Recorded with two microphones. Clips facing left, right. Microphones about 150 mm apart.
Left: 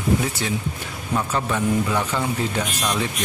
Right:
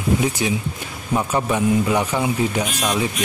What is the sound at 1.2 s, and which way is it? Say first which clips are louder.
Speech: right 3 dB; 15° right (ahead or behind).